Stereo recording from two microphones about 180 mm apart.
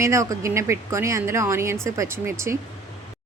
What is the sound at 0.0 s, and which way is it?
Speech, 15° right (ahead or behind).